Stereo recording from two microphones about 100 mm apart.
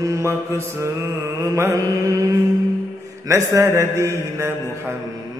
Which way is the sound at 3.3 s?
30° right (ahead or behind).